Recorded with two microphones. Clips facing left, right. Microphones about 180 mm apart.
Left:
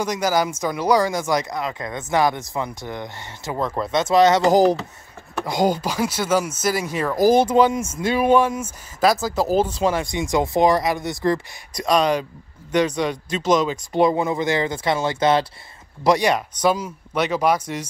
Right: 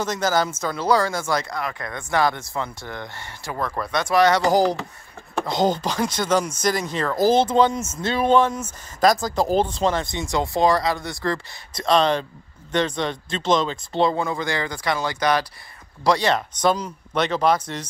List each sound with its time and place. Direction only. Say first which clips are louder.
0.0 s speech: left 1 dB; 10° left (ahead or behind)